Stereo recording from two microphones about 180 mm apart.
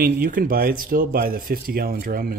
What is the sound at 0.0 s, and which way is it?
Speech, 55° right (ahead or behind).